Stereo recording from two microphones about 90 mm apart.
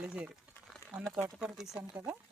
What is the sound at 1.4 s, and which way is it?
Speech, 5° right (ahead or behind).